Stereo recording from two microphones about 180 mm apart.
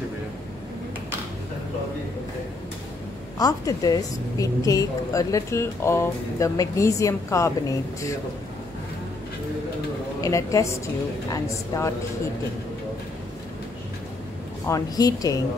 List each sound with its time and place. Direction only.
3.3 s a woman's voice: 20° left (ahead or behind)
10.2 s a woman's voice: 15° left (ahead or behind)
14.7 s speech: 20° left (ahead or behind)